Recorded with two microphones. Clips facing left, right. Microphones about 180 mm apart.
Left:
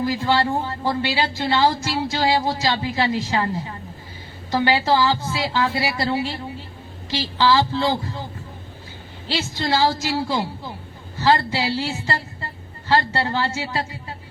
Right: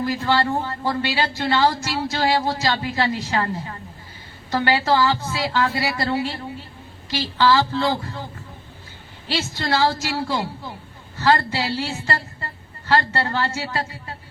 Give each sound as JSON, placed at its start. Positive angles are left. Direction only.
{"t": 0.0, "sound": "speech", "side_deg": 20}
{"t": 4.5, "sound": "a man's voice", "side_deg": 20}
{"t": 9.3, "sound": "speech", "side_deg": 20}